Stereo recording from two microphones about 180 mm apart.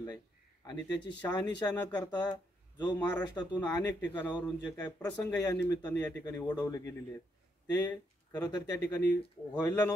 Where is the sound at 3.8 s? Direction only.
10° left (ahead or behind).